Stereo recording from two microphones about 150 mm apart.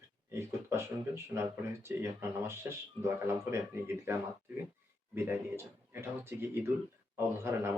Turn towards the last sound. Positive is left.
turn(degrees=-15)  # may be behind; listen again after turning